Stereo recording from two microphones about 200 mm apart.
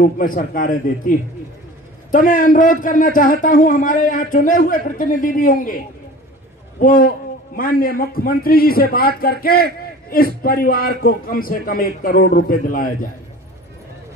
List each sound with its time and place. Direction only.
0.0 s a man's voice: 45° left (ahead or behind)
6.8 s a man's voice: 45° left (ahead or behind)